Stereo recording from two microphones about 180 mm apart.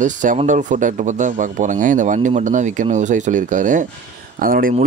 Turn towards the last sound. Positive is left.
turn(degrees=-50)  # may be behind; listen again after turning